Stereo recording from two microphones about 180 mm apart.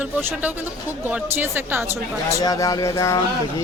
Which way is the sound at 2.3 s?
20° left (ahead or behind).